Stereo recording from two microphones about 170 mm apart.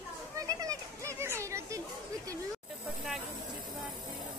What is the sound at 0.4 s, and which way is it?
Children playing, 20° right (ahead or behind).